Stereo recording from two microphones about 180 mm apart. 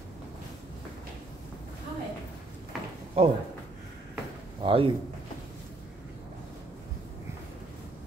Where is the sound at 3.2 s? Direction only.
30° right (ahead or behind).